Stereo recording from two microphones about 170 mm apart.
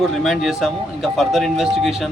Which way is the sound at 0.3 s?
Centre (ahead or behind).